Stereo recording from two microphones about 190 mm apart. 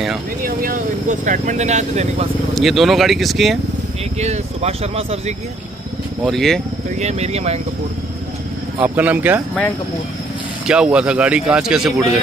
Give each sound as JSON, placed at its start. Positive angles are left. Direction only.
{"t": 0.4, "sound": "speech", "side_deg": -50}
{"t": 2.5, "sound": "speech", "side_deg": 0}
{"t": 4.2, "sound": "speech", "side_deg": -35}
{"t": 6.2, "sound": "speech", "side_deg": 0}
{"t": 7.0, "sound": "speech", "side_deg": -35}
{"t": 8.7, "sound": "speech", "side_deg": -10}
{"t": 10.7, "sound": "speech", "side_deg": -5}